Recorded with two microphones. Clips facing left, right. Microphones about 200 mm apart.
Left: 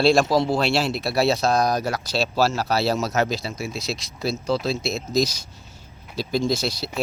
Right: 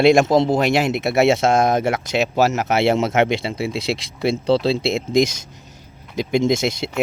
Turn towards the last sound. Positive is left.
turn(degrees=-20)  # may be behind; listen again after turning